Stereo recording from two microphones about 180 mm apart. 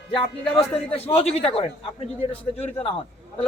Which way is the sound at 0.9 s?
35° left (ahead or behind).